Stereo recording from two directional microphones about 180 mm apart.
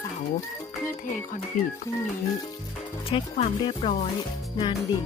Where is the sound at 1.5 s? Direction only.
45° left (ahead or behind).